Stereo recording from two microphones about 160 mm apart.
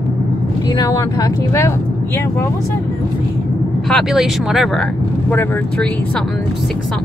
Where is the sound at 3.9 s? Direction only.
Centre (ahead or behind).